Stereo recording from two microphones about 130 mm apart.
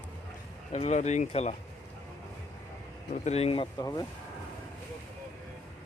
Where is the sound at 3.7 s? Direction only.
30° left (ahead or behind).